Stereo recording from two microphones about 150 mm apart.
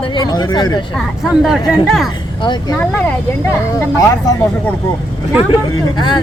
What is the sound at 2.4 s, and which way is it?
Speech, 30° left (ahead or behind).